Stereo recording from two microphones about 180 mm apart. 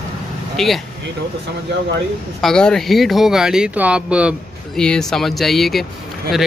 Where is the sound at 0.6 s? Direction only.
Centre (ahead or behind).